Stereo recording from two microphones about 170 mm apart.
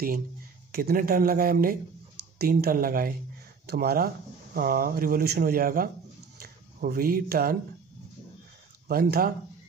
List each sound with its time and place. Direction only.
0.7 s speech: 65° right (ahead or behind)
3.6 s speech: 65° right (ahead or behind)
8.8 s speech: 65° right (ahead or behind)